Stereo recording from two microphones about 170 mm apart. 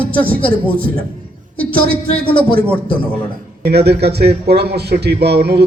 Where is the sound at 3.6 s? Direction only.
75° right (ahead or behind).